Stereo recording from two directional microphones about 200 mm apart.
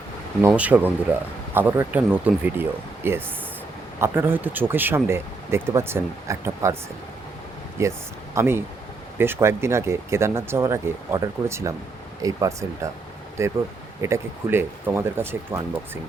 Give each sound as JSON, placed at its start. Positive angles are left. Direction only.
{"t": 0.4, "sound": "speech", "side_deg": -5}
{"t": 7.8, "sound": "speech", "side_deg": -15}